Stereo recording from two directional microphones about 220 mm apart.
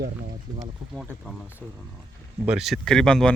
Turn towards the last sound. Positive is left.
turn(degrees=5)  # may be behind; listen again after turning